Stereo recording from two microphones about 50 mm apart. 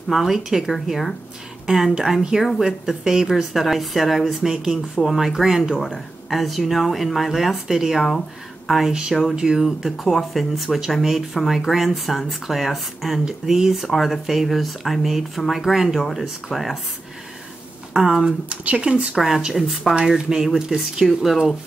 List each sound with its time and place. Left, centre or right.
0.1 s speech: centre
5.8 s speech: centre
17.9 s speech: centre
18.2 s speech: right
19.1 s speech: centre
20.0 s speech: centre